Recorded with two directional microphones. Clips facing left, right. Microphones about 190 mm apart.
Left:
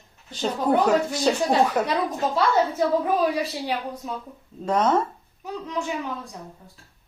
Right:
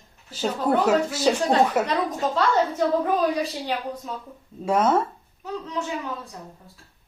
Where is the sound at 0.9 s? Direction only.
5° right (ahead or behind).